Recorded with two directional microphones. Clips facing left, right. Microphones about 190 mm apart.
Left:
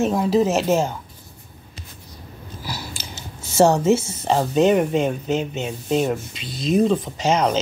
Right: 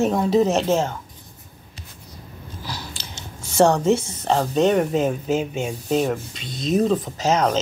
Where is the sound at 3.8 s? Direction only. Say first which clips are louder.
Left 1 dB; 5° left (ahead or behind).